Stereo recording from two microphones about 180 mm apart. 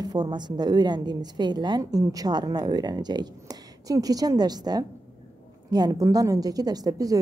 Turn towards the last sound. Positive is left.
turn(degrees=-20)  # may be behind; listen again after turning